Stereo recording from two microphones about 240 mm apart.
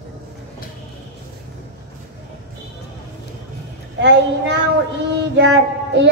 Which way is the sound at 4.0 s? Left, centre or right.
Right.